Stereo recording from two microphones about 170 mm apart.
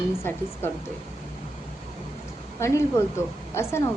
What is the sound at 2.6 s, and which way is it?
A woman's voice, 15° left (ahead or behind).